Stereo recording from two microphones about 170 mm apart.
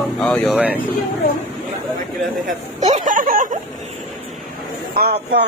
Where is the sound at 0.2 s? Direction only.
5° left (ahead or behind).